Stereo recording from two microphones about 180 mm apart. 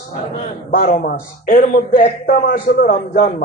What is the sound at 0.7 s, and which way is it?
A man's voice, 45° left (ahead or behind).